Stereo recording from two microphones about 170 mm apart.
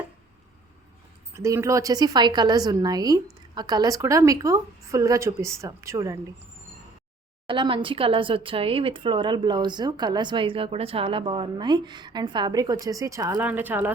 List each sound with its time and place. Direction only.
1.4 s speech: 20° right (ahead or behind)
7.4 s speech: 30° right (ahead or behind)
13.4 s speech: 10° right (ahead or behind)